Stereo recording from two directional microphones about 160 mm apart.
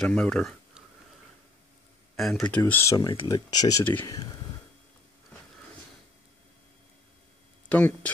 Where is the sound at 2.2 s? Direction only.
Centre (ahead or behind); by 3.8 s 25° left (ahead or behind).